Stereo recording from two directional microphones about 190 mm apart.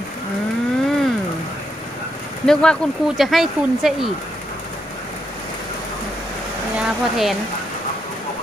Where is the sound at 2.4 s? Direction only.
5° left (ahead or behind).